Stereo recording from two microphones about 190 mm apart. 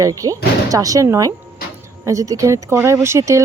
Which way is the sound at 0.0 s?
15° right (ahead or behind).